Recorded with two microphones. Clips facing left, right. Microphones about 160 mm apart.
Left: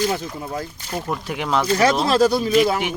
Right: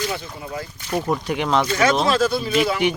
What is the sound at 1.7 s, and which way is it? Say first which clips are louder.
Speech: left 1 dB; 30° left (ahead or behind).